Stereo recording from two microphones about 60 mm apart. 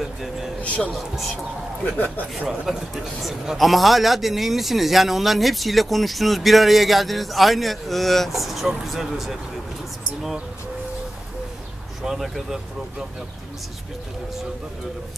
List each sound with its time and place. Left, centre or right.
0.6 s speech: left
0.9 s a man's voice: centre
2.3 s a man's voice: centre
12.0 s speech: centre